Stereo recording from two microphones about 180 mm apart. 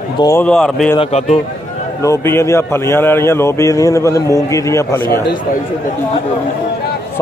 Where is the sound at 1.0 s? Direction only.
35° left (ahead or behind).